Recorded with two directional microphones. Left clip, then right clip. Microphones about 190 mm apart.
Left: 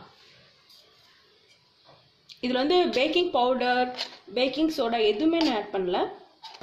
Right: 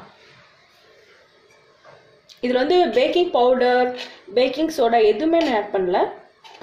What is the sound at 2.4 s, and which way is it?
Speech, 30° left (ahead or behind).